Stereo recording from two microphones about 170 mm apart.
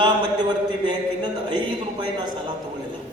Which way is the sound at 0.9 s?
25° right (ahead or behind).